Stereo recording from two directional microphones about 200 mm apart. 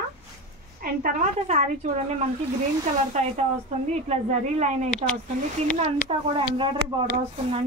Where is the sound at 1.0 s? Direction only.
35° right (ahead or behind).